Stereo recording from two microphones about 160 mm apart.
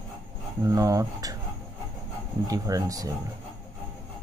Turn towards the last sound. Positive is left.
turn(degrees=-20)  # may be behind; listen again after turning